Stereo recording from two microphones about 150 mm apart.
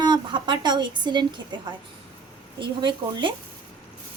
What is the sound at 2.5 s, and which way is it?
Speech, 30° right (ahead or behind).